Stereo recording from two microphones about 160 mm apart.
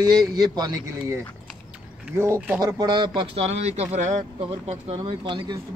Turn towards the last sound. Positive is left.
turn(degrees=-30)  # may be behind; listen again after turning